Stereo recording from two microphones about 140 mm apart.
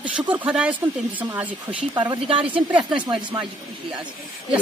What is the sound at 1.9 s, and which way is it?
Speech, 30° right (ahead or behind).